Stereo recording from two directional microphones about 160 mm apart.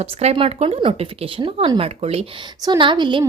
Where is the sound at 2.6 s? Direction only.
30° right (ahead or behind).